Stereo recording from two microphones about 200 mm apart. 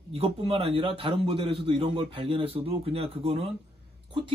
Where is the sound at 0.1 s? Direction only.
30° right (ahead or behind).